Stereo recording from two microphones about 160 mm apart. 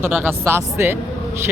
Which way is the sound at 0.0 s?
15° right (ahead or behind).